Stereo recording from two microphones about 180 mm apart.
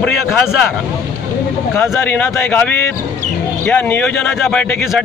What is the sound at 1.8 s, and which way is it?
Speech, 15° left (ahead or behind).